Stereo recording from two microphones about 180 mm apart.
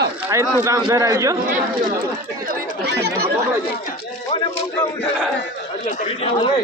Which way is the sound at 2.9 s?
65° right (ahead or behind).